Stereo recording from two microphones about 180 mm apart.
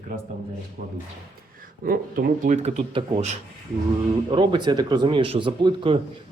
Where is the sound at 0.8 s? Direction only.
50° right (ahead or behind).